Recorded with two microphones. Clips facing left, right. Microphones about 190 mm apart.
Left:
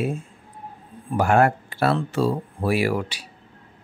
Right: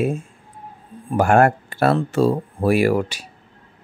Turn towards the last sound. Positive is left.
turn(degrees=-45)  # may be behind; listen again after turning